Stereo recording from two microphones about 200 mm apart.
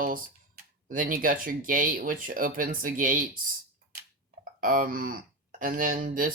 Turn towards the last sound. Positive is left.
turn(degrees=-45)  # may be behind; listen again after turning